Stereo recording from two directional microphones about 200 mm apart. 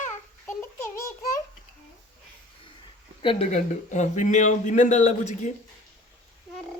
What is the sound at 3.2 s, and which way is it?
A man's voice, 35° left (ahead or behind).